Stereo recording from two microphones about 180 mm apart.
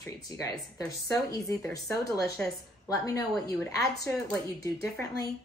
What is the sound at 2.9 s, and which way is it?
Speech, 15° left (ahead or behind).